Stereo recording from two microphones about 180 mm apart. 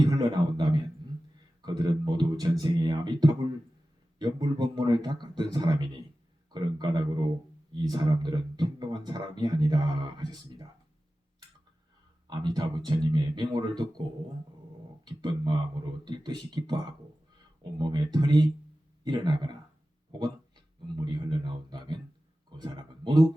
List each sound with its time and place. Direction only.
0.0 s a sound: 20° right (ahead or behind)
1.6 s speech: 25° right (ahead or behind)
12.3 s speech: 25° right (ahead or behind)
15.0 s speech: 25° right (ahead or behind)
21.0 s speech: 25° right (ahead or behind)